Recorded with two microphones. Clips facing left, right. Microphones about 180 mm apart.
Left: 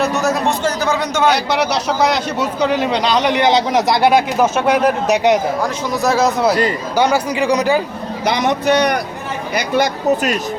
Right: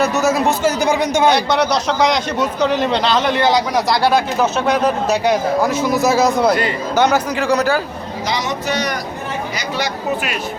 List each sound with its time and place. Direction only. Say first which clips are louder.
0.0 s a man's voice: right 1 dB; centre (ahead or behind)
1.3 s a man's voice: right 1 dB; 5° left (ahead or behind)
5.6 s a man's voice: right 2 dB; 5° right (ahead or behind); by 7.6 s 10° left (ahead or behind)
8.2 s speech: left 5 dB; 60° left (ahead or behind)